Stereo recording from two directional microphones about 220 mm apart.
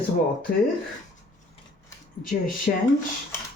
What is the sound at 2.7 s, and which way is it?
Speech, 40° left (ahead or behind).